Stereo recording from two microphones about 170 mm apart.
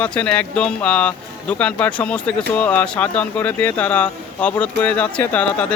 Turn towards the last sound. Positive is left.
turn(degrees=5)  # may be behind; listen again after turning